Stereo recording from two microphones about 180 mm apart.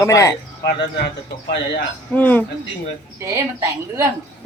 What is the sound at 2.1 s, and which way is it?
Speech, 10° left (ahead or behind).